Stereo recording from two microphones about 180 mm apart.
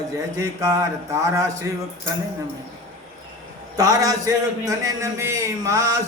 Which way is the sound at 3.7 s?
20° right (ahead or behind).